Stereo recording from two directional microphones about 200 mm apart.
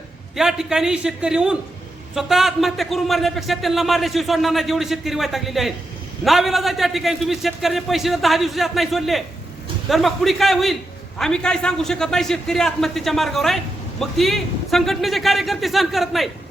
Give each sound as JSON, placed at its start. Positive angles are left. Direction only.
{"t": 0.3, "sound": "a man's voice", "side_deg": 0}